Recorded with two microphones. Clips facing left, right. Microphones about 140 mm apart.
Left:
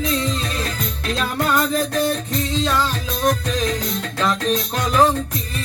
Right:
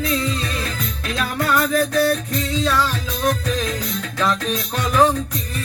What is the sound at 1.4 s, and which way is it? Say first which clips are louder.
Music: right 1 dB; 20° left (ahead or behind).